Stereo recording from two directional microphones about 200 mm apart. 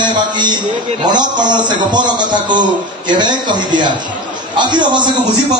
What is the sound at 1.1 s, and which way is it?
A man's voice, 20° right (ahead or behind).